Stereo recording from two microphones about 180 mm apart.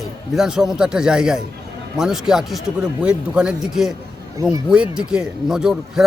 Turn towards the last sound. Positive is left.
turn(degrees=-5)  # may be behind; listen again after turning